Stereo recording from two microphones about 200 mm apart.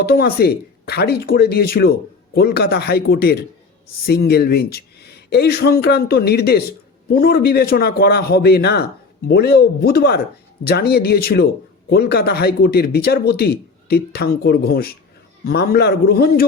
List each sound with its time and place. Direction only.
0.0 s speech: 50° left (ahead or behind)